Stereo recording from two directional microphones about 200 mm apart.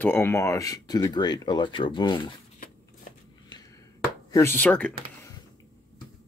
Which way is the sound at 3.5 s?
20° left (ahead or behind).